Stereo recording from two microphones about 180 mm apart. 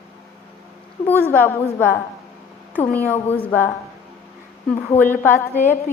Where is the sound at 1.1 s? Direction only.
10° left (ahead or behind).